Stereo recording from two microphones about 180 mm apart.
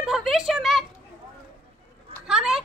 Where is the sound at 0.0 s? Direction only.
Centre (ahead or behind).